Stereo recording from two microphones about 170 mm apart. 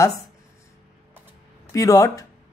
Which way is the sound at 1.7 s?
20° left (ahead or behind).